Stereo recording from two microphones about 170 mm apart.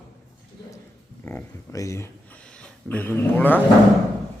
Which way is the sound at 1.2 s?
10° left (ahead or behind).